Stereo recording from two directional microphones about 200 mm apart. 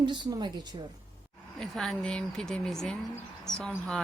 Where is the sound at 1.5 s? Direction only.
Centre (ahead or behind).